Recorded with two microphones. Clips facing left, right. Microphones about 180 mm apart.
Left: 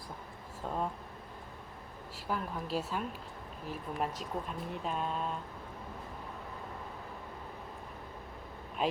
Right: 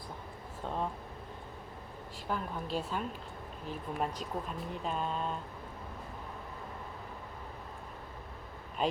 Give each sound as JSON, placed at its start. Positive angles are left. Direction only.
{"t": 0.6, "sound": "speech", "side_deg": 5}
{"t": 2.1, "sound": "speech", "side_deg": 5}
{"t": 8.8, "sound": "speech", "side_deg": 0}